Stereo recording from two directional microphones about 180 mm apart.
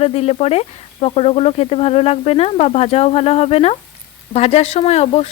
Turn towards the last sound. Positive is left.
turn(degrees=35)  # may be behind; listen again after turning